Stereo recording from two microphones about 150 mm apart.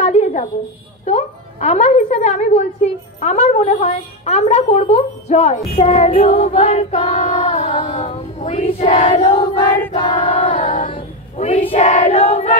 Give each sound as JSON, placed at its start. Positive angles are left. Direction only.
{"t": 0.0, "sound": "a sound", "side_deg": 50}
{"t": 1.0, "sound": "a woman's voice", "side_deg": 45}
{"t": 9.3, "sound": "choir", "side_deg": 35}
{"t": 10.5, "sound": "a capella", "side_deg": 60}
{"t": 10.9, "sound": "choir", "side_deg": 45}
{"t": 11.7, "sound": "a woman's voice", "side_deg": 50}